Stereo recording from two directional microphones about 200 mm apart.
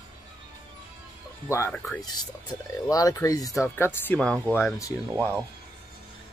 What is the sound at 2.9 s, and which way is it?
Speech, 15° left (ahead or behind).